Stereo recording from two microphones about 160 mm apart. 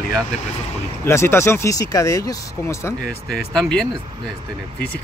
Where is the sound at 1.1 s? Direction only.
15° left (ahead or behind).